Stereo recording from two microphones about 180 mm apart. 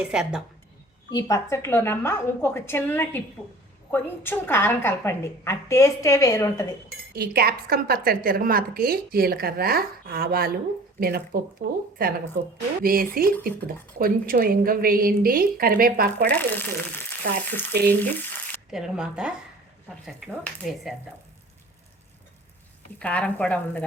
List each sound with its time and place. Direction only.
0.0 s speech: 5° right (ahead or behind)
1.1 s a woman's voice: 20° left (ahead or behind)
7.1 s a woman's voice: 60° right (ahead or behind)
16.2 s a woman's voice: 10° left (ahead or behind)
18.0 s frying: 10° left (ahead or behind)
18.7 s speech: 5° right (ahead or behind)
23.0 s a woman's voice: 5° left (ahead or behind)